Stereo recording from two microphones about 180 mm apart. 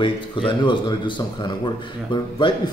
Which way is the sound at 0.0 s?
25° left (ahead or behind).